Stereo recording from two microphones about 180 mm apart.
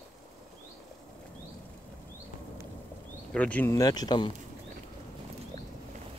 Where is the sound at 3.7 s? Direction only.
20° left (ahead or behind).